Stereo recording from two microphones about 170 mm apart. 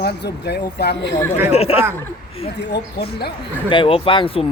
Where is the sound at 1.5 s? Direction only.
35° left (ahead or behind).